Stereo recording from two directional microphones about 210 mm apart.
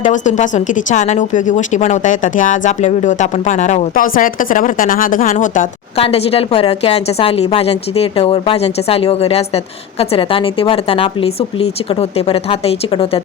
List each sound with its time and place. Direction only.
0.0 s a woman's voice: 35° left (ahead or behind)